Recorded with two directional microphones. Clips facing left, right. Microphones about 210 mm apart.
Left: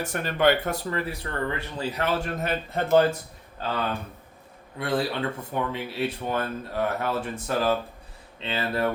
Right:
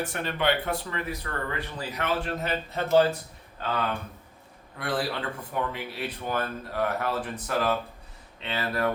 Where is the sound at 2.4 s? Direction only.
50° left (ahead or behind).